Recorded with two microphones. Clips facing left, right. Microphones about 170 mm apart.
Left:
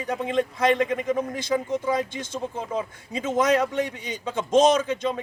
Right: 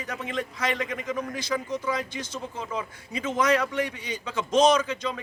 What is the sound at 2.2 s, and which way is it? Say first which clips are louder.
Speech: left 4 dB; 50° left (ahead or behind).